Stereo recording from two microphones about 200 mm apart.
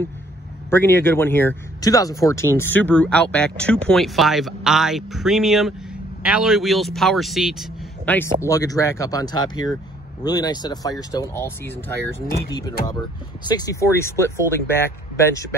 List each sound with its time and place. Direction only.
0.7 s speech: 10° left (ahead or behind)